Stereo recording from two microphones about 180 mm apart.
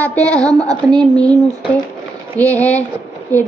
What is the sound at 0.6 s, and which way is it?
Speech, 25° right (ahead or behind).